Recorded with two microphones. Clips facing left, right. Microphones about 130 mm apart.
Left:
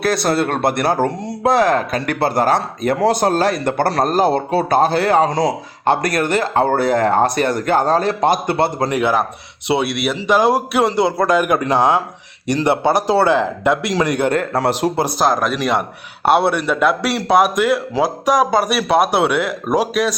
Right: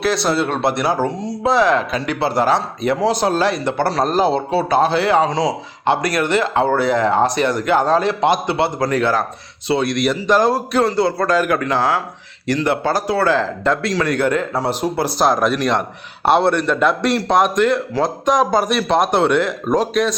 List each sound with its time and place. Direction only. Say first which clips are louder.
0.0 s speech: left 1 dB; 50° left (ahead or behind)
8.9 s a man's voice: left 1 dB; 15° left (ahead or behind)
14.3 s speech: left 2 dB; 70° left (ahead or behind)
15.2 s a man's voice: right 2 dB; centre (ahead or behind)